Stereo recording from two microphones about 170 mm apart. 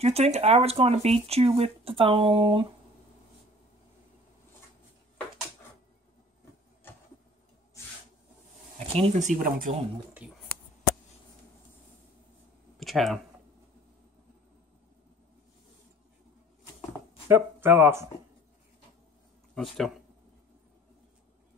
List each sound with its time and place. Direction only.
0.0 s speech: 40° right (ahead or behind)
8.7 s speech: 40° right (ahead or behind)
9.4 s speech: 55° right (ahead or behind)
10.2 s speech: 5° right (ahead or behind)
12.7 s a sound: centre (ahead or behind)
17.3 s speech: 10° right (ahead or behind)
19.5 s speech: centre (ahead or behind)